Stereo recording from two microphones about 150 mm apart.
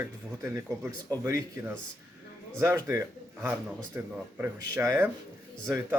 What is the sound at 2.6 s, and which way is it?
Speech, 20° right (ahead or behind).